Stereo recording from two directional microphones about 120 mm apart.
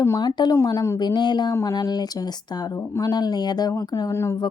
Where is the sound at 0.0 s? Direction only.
30° left (ahead or behind).